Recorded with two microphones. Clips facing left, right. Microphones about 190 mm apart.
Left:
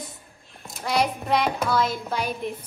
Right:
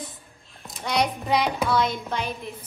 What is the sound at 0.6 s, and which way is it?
Speech, centre (ahead or behind).